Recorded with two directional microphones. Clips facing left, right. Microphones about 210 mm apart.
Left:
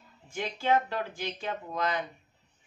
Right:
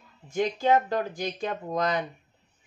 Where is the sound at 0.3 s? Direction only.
40° right (ahead or behind).